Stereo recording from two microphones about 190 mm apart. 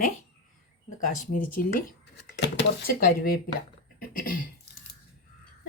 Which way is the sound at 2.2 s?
65° left (ahead or behind).